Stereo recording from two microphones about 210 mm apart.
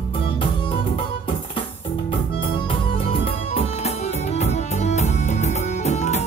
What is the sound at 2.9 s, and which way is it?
Music, 25° left (ahead or behind).